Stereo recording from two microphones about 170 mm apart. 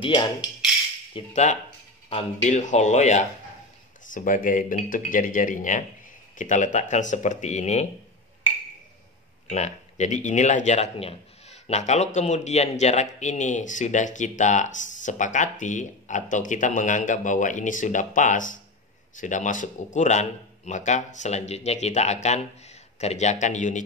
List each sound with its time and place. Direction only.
0.0 s speech: 25° left (ahead or behind)
1.1 s speech: 40° left (ahead or behind)
9.5 s speech: 45° left (ahead or behind)